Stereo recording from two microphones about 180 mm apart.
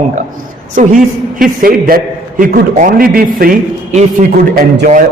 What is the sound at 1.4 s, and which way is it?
A man's voice, 55° right (ahead or behind).